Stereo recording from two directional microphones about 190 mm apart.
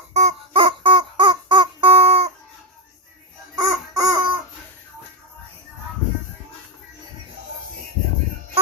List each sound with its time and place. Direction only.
0.1 s music: 35° right (ahead or behind)
3.5 s music: 20° right (ahead or behind)